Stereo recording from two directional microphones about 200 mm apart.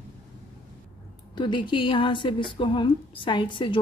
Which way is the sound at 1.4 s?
25° left (ahead or behind).